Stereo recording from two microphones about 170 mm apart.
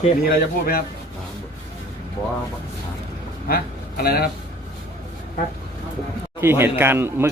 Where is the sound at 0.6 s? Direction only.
60° left (ahead or behind).